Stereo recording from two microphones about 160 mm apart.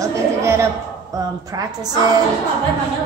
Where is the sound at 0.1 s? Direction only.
15° right (ahead or behind).